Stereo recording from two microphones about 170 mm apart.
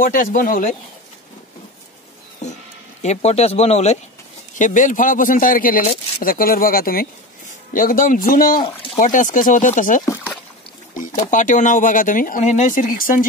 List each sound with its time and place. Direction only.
0.0 s speech: 55° left (ahead or behind)
3.0 s a man's voice: 40° left (ahead or behind)
8.5 s speech: 25° left (ahead or behind)
9.0 s speech: 50° left (ahead or behind)
11.1 s speech: 50° left (ahead or behind)